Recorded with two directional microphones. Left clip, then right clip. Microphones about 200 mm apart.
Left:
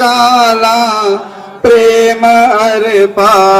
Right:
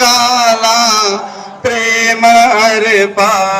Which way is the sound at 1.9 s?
60° left (ahead or behind).